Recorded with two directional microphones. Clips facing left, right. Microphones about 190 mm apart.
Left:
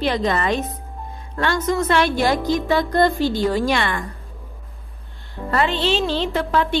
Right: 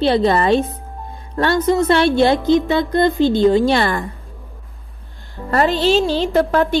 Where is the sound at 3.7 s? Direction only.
35° right (ahead or behind).